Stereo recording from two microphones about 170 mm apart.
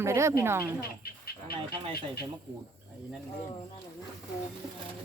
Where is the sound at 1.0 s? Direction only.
65° left (ahead or behind).